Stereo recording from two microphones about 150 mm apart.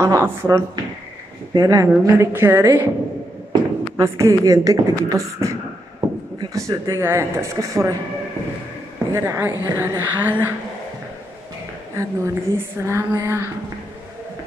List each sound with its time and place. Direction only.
0.0 s speech: 20° right (ahead or behind)
3.9 s speech: 20° right (ahead or behind)
9.1 s speech: 20° right (ahead or behind)
11.9 s a woman's voice: 20° right (ahead or behind)